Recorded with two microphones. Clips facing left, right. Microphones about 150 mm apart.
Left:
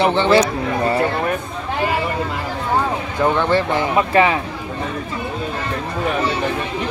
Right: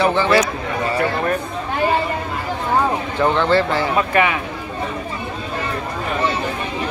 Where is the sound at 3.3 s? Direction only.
15° left (ahead or behind).